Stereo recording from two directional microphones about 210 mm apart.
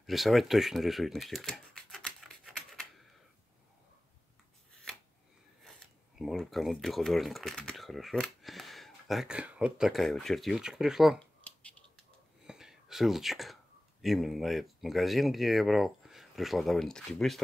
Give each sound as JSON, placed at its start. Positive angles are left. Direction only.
{"t": 0.0, "sound": "shuffling cards", "side_deg": 0}
{"t": 5.6, "sound": "speech", "side_deg": 0}
{"t": 12.4, "sound": "whispering", "side_deg": 0}
{"t": 14.0, "sound": "speech", "side_deg": 0}